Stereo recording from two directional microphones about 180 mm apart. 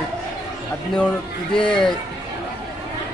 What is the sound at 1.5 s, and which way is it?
Speech, 5° left (ahead or behind).